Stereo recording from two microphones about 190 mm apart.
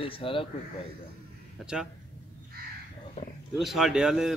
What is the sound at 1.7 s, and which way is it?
Speech, 5° right (ahead or behind).